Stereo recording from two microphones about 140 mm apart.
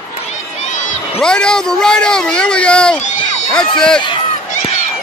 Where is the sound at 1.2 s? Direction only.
5° left (ahead or behind).